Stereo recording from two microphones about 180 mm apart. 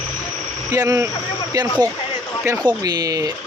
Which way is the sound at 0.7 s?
20° right (ahead or behind).